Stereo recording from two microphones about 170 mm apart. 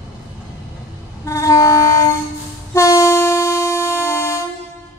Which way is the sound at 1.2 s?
20° left (ahead or behind).